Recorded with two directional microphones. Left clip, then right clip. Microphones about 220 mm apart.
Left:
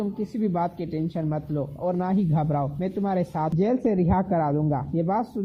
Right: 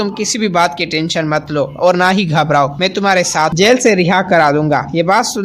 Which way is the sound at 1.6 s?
25° right (ahead or behind).